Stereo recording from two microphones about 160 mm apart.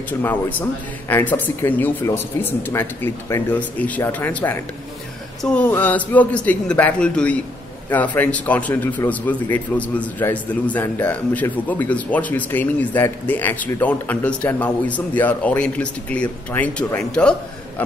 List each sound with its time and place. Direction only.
0.2 s a man's voice: 10° left (ahead or behind)